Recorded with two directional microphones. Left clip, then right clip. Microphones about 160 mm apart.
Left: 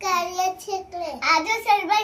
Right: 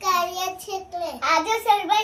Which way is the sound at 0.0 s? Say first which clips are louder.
Even; 15° left (ahead or behind).